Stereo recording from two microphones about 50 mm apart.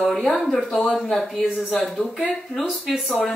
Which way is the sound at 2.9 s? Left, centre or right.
Centre.